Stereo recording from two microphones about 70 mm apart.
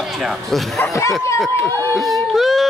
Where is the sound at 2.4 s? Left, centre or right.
Centre.